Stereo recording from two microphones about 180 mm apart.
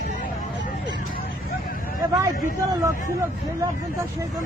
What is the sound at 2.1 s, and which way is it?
Speech, 20° right (ahead or behind).